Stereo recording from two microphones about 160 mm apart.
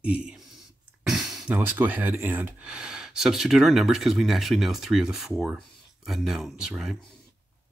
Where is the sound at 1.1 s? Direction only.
Centre (ahead or behind).